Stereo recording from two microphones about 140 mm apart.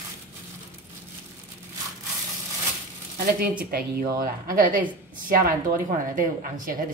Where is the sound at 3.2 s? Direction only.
90° right; by 6.7 s 75° right (ahead or behind).